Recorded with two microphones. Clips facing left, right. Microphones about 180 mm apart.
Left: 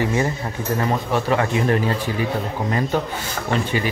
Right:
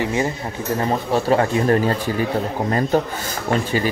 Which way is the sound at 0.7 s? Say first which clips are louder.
Right 2 dB; 30° right (ahead or behind).